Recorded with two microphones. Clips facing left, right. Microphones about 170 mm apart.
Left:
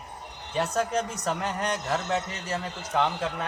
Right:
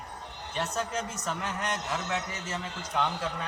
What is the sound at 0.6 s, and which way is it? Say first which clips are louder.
Speech: left 5 dB; 65° left (ahead or behind).